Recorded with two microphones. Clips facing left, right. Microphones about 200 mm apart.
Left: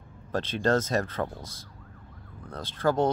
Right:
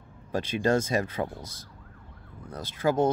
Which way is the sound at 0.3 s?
10° right (ahead or behind).